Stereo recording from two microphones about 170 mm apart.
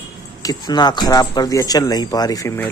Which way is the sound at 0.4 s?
25° left (ahead or behind).